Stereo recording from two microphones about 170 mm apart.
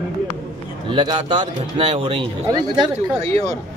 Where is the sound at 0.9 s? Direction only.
30° right (ahead or behind).